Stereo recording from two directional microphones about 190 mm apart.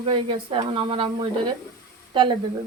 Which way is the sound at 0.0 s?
30° right (ahead or behind).